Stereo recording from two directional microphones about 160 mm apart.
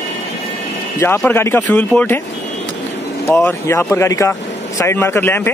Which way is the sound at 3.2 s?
15° left (ahead or behind).